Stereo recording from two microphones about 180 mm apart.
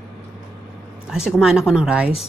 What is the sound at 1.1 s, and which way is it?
Speech, 5° right (ahead or behind).